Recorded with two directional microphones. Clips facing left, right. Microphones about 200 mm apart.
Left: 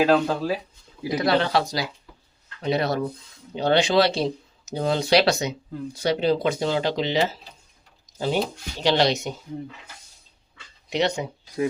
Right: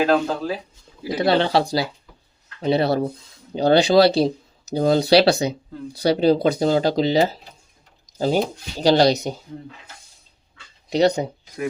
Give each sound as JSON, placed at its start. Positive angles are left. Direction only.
{"t": 0.0, "sound": "speech", "side_deg": 0}
{"t": 1.2, "sound": "speech", "side_deg": -30}
{"t": 8.8, "sound": "speech", "side_deg": -40}
{"t": 10.8, "sound": "speech", "side_deg": -35}